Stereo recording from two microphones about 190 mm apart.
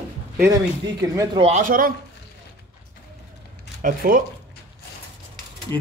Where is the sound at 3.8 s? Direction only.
45° right (ahead or behind).